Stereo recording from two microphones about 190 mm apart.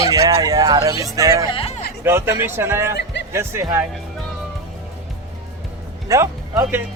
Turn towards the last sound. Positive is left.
turn(degrees=-15)  # may be behind; listen again after turning